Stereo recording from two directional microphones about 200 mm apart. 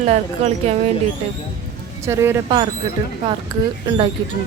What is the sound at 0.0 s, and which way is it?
Speech, 35° right (ahead or behind).